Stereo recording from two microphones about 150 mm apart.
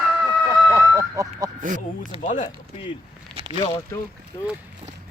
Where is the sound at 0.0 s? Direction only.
Centre (ahead or behind).